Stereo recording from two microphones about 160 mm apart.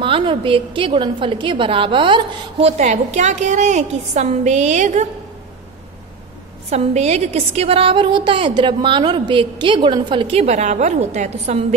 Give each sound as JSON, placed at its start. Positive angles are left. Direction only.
{"t": 0.0, "sound": "a woman's voice", "side_deg": -35}
{"t": 6.7, "sound": "a woman's voice", "side_deg": -45}